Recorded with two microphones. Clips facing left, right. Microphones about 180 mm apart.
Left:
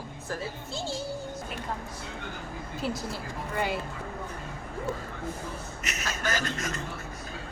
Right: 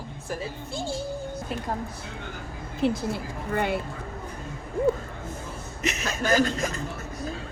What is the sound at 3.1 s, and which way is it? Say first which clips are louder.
Speech: right 4 dB; 55° right (ahead or behind).